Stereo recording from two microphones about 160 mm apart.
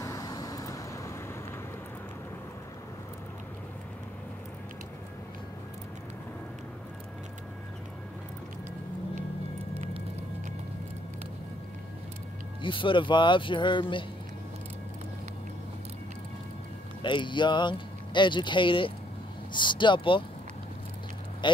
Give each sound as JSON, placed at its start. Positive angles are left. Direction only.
{"t": 0.0, "sound": "vehicle", "side_deg": 20}
{"t": 12.6, "sound": "speech", "side_deg": 30}
{"t": 17.0, "sound": "speech", "side_deg": 30}